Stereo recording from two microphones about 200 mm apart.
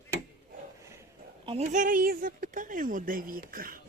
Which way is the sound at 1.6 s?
40° right (ahead or behind).